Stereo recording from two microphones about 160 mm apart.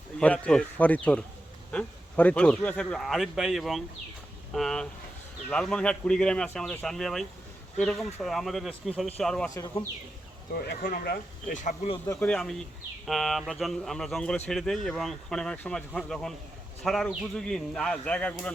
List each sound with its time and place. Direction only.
0.2 s speech: 5° left (ahead or behind)
10.5 s speech: 80° left; by 11.7 s 55° left (ahead or behind)
12.0 s speech: 10° left (ahead or behind)